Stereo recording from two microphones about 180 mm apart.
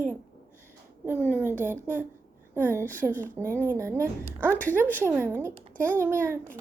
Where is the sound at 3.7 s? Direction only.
15° right (ahead or behind).